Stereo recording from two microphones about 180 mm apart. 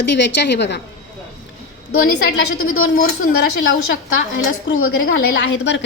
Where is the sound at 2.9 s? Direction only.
65° left (ahead or behind).